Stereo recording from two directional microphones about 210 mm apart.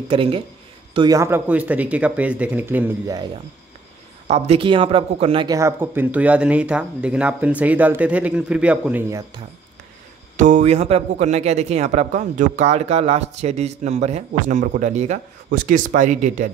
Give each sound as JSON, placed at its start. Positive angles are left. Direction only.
{"t": 0.1, "sound": "speech", "side_deg": -25}
{"t": 4.3, "sound": "speech", "side_deg": -25}
{"t": 10.3, "sound": "speech", "side_deg": -35}